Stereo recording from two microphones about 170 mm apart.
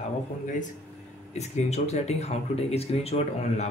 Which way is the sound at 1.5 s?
40° left (ahead or behind).